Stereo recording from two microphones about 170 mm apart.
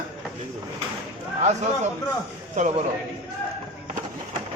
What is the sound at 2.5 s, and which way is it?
Speech, 45° right (ahead or behind).